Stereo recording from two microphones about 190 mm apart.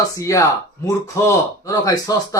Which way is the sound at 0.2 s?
15° left (ahead or behind).